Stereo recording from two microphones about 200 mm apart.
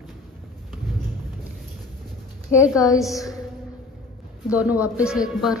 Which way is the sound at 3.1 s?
15° left (ahead or behind).